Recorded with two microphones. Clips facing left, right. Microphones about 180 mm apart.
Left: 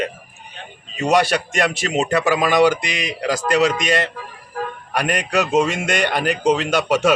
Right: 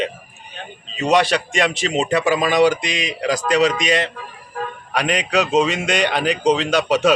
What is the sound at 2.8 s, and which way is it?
Speech, 55° left (ahead or behind).